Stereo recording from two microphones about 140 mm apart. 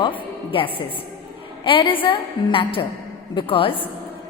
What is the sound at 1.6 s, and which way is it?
A woman's voice, 40° left (ahead or behind).